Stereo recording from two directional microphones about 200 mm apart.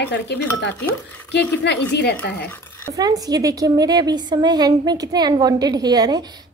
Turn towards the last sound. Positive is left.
turn(degrees=-20)  # may be behind; listen again after turning